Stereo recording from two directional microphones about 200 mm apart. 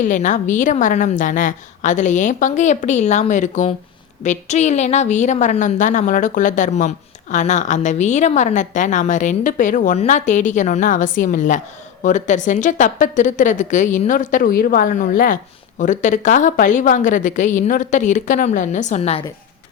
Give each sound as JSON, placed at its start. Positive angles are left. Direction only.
{"t": 0.0, "sound": "a woman's voice", "side_deg": 40}